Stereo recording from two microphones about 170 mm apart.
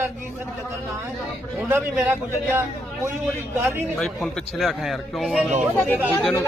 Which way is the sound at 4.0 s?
5° left (ahead or behind).